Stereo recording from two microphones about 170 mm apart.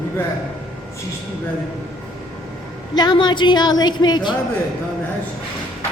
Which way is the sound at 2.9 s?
25° left (ahead or behind).